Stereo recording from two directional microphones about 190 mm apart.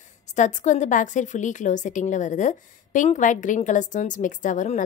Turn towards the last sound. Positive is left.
turn(degrees=40)  # may be behind; listen again after turning